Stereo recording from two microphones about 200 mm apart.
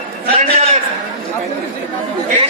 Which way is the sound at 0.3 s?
30° right (ahead or behind).